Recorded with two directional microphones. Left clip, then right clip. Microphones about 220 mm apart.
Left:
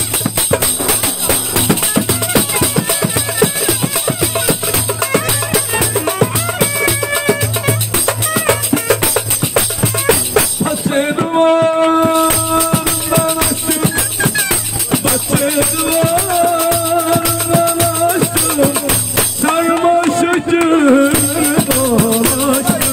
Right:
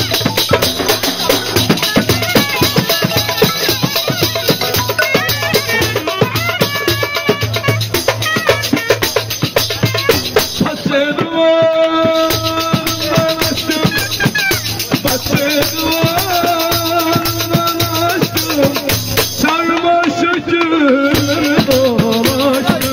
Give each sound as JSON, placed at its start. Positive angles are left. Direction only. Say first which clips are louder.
{"t": 2.0, "sound": "music", "louder": "right 3 dB", "side_deg": 50}
{"t": 11.3, "sound": "music", "louder": "right 1 dB", "side_deg": 35}
{"t": 16.6, "sound": "music", "louder": "even", "side_deg": 50}